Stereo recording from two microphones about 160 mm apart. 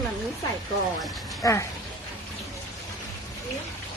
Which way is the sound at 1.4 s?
20° left (ahead or behind).